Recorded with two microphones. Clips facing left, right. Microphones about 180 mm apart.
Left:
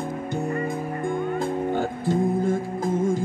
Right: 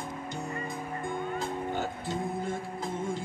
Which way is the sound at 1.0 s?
50° left (ahead or behind).